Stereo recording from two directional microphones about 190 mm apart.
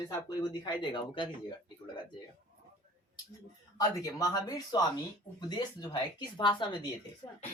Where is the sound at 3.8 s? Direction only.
20° left (ahead or behind).